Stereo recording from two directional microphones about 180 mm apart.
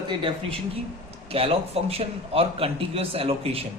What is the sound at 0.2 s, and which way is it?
A man's voice, 30° right (ahead or behind).